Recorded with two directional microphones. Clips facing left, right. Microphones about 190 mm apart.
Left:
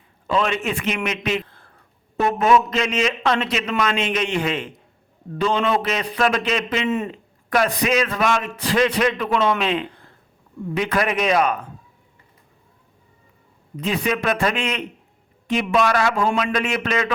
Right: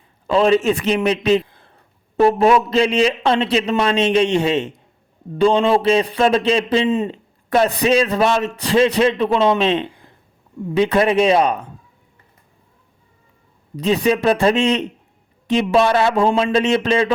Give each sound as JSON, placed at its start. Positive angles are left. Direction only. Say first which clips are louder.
{"t": 0.3, "sound": "a man's voice", "louder": "right 7 dB", "side_deg": -35}
{"t": 1.5, "sound": "a sound", "louder": "right 1 dB", "side_deg": -20}
{"t": 2.1, "sound": "a man's voice", "louder": "right 4 dB", "side_deg": -30}
{"t": 9.9, "sound": "a sound", "louder": "right 1 dB", "side_deg": -15}
{"t": 10.6, "sound": "a man's voice", "louder": "right 6 dB", "side_deg": -25}
{"t": 13.7, "sound": "a man's voice", "louder": "right 6 dB", "side_deg": -35}